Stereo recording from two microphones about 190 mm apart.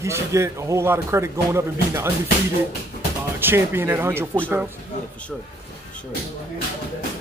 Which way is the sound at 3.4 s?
10° right (ahead or behind).